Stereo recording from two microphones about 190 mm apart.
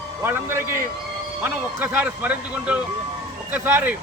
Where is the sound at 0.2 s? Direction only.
15° right (ahead or behind).